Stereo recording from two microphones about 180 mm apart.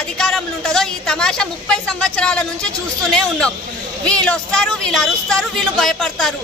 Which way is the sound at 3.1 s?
5° left (ahead or behind).